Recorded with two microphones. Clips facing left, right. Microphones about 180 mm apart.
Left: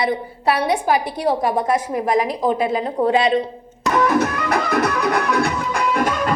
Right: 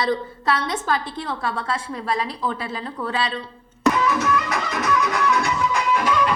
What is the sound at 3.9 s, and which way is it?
Music, 60° left (ahead or behind).